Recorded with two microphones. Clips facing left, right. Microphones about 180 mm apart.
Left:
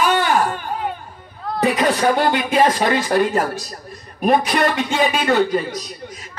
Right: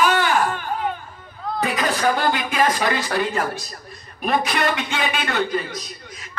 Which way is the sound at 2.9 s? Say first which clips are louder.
Left 5 dB; 45° left (ahead or behind).